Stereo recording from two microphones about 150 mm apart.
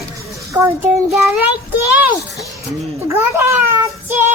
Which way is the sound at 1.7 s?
10° right (ahead or behind).